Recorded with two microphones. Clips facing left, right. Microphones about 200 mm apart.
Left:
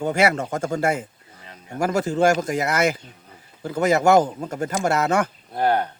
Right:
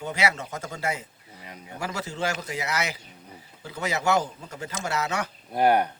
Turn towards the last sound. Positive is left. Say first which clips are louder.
# even
turn(degrees=-10)  # may be behind; listen again after turning